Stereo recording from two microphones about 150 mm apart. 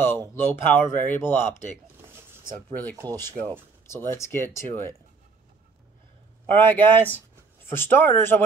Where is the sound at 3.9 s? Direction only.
15° left (ahead or behind).